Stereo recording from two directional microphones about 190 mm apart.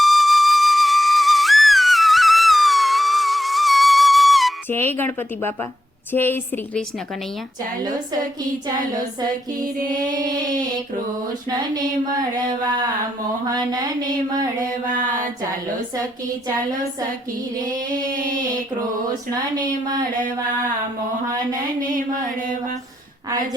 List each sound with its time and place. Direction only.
0.0 s flute: centre (ahead or behind)
4.7 s speech: 10° left (ahead or behind)
13.6 s speech: 20° right (ahead or behind)
19.3 s speech: 20° right (ahead or behind)
21.8 s music: 45° right (ahead or behind)